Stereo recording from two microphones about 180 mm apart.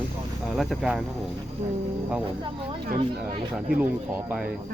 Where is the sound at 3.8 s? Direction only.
10° right (ahead or behind).